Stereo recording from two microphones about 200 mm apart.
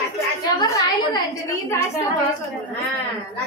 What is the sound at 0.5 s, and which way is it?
Speech, 20° left (ahead or behind).